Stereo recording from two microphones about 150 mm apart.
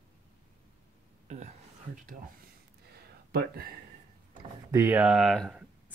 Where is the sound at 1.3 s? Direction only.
50° right (ahead or behind).